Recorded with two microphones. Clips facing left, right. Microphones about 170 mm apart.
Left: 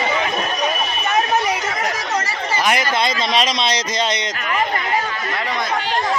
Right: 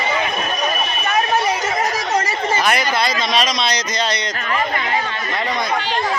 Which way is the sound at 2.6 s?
20° left (ahead or behind).